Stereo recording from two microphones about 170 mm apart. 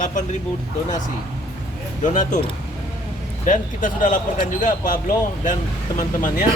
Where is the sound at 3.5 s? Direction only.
50° left (ahead or behind).